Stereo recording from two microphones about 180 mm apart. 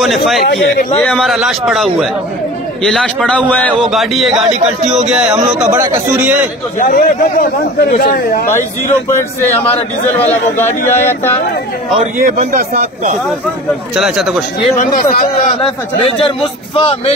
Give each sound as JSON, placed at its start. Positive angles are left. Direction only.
{"t": 0.0, "sound": "a man's voice", "side_deg": 0}
{"t": 0.5, "sound": "speech", "side_deg": 65}
{"t": 1.0, "sound": "a man's voice", "side_deg": 0}
{"t": 6.8, "sound": "speech", "side_deg": 50}
{"t": 9.1, "sound": "a man's voice", "side_deg": 10}
{"t": 10.9, "sound": "a man's voice", "side_deg": 10}
{"t": 12.2, "sound": "speech", "side_deg": -55}
{"t": 13.9, "sound": "a man's voice", "side_deg": -5}
{"t": 14.8, "sound": "speech", "side_deg": 50}
{"t": 16.0, "sound": "a man's voice", "side_deg": 30}